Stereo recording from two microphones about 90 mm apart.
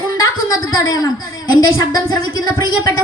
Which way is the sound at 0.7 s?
40° left (ahead or behind).